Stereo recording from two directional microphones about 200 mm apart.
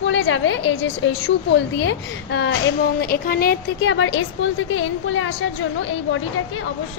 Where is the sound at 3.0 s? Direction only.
45° left (ahead or behind); by 6.6 s 80° left.